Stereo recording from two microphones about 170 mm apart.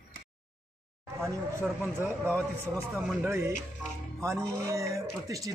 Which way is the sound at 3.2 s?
15° right (ahead or behind).